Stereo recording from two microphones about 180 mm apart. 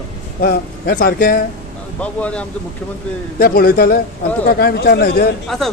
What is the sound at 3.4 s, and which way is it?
A man's voice, 55° left (ahead or behind).